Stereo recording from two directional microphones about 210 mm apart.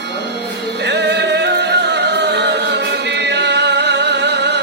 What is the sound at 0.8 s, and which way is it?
Music, 55° right (ahead or behind).